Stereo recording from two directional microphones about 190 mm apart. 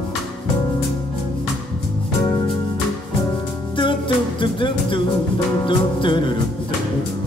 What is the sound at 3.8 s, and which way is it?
Music, 25° left (ahead or behind).